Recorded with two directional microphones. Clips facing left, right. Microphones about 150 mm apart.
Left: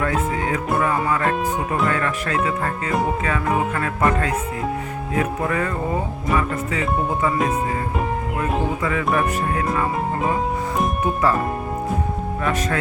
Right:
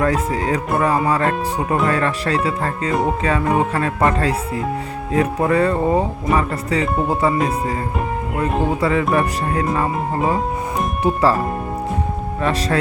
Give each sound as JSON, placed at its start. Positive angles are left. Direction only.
{"t": 0.0, "sound": "speech", "side_deg": -35}
{"t": 8.8, "sound": "speech", "side_deg": -30}
{"t": 11.0, "sound": "speech", "side_deg": -35}
{"t": 12.4, "sound": "speech", "side_deg": -35}